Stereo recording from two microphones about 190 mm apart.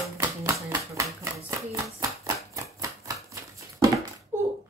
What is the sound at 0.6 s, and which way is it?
Speech, 15° right (ahead or behind).